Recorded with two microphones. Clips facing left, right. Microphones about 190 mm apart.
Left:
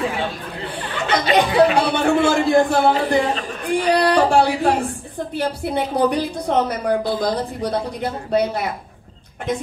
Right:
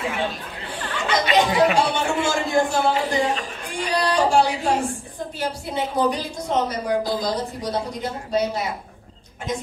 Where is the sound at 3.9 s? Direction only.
60° left (ahead or behind).